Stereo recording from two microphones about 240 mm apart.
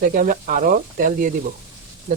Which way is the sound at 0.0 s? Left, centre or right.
Right.